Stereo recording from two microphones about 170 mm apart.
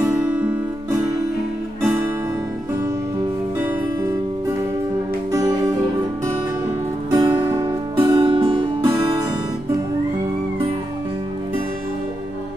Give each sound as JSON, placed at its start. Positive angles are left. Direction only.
{"t": 0.0, "sound": "music", "side_deg": -10}
{"t": 5.3, "sound": "music", "side_deg": -20}
{"t": 7.2, "sound": "music", "side_deg": -20}